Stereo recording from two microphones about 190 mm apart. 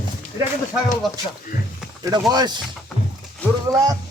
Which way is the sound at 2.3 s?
20° right (ahead or behind).